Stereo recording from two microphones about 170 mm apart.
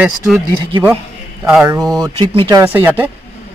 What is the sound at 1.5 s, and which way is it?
Speech, 5° right (ahead or behind).